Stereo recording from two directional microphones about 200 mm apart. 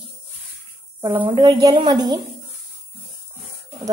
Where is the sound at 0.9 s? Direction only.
25° right (ahead or behind).